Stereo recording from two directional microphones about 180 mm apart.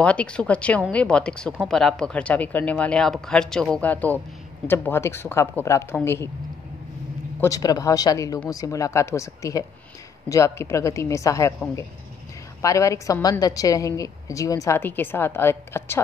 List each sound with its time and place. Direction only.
0.0 s a woman's voice: 5° left (ahead or behind)
7.3 s a woman's voice: 15° left (ahead or behind)
12.6 s a woman's voice: 15° left (ahead or behind)